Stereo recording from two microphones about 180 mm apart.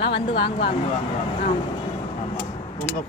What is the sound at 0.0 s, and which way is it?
Speech, 30° left (ahead or behind).